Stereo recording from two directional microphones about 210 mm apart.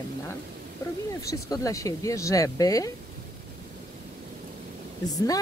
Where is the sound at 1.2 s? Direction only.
15° left (ahead or behind).